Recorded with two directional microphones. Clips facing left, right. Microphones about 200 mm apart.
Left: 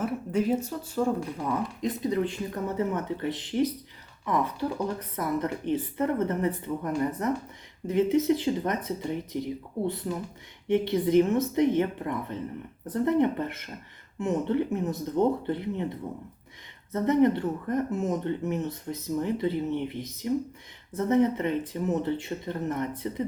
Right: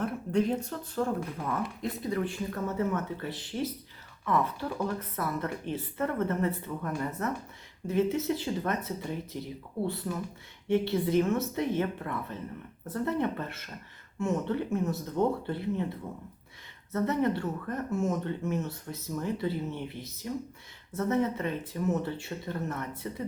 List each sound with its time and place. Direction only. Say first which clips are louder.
0.0 s speech: left 1 dB; 5° left (ahead or behind)
16.9 s speech: left 5 dB; 20° left (ahead or behind)